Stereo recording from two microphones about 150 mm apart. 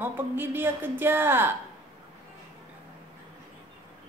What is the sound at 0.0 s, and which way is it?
Speech, 15° right (ahead or behind).